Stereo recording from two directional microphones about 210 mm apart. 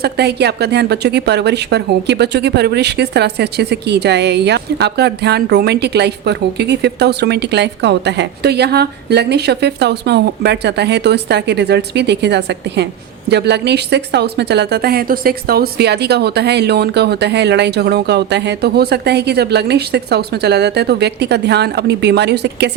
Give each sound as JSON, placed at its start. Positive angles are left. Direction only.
{"t": 0.0, "sound": "a woman's voice", "side_deg": -50}